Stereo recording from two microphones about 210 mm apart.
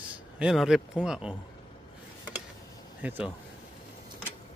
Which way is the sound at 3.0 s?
5° right (ahead or behind).